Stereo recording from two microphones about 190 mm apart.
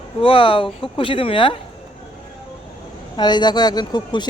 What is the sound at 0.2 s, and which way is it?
Speech, 30° left (ahead or behind).